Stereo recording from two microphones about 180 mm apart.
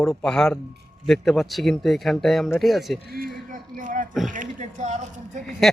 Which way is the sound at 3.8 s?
45° right (ahead or behind).